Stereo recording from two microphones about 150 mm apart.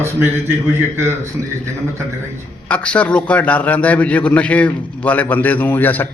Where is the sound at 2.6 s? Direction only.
10° left (ahead or behind).